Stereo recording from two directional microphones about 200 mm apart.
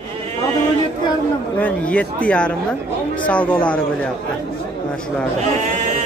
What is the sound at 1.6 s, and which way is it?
Speech, 5° left (ahead or behind).